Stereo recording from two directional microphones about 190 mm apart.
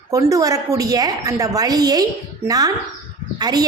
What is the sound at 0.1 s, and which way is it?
A woman's voice, 15° right (ahead or behind).